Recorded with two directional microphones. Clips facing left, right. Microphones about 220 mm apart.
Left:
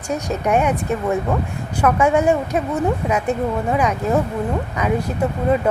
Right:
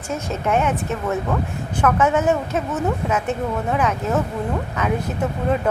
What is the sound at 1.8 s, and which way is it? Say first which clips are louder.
Speech: left 2 dB; 10° left (ahead or behind).